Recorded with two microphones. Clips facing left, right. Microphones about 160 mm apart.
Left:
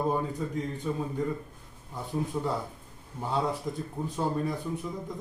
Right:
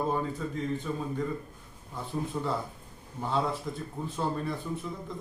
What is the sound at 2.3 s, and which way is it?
Speech, 10° left (ahead or behind).